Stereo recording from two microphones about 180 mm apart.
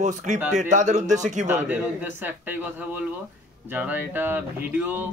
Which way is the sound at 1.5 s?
10° right (ahead or behind).